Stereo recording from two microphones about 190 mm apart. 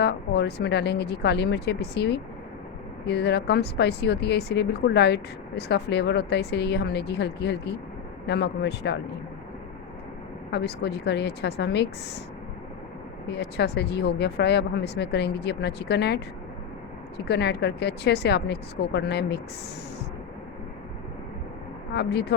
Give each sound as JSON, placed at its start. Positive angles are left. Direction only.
{"t": 0.0, "sound": "speech", "side_deg": 60}
{"t": 10.5, "sound": "speech", "side_deg": 60}
{"t": 13.2, "sound": "speech", "side_deg": 60}
{"t": 21.9, "sound": "speech", "side_deg": 60}